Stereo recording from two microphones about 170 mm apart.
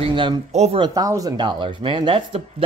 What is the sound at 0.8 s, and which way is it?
Speech, 20° right (ahead or behind).